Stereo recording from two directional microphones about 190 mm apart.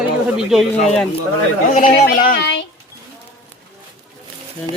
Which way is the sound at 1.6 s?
45° left (ahead or behind).